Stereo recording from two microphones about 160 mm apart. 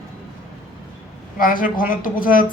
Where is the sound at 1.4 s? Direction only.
60° left (ahead or behind).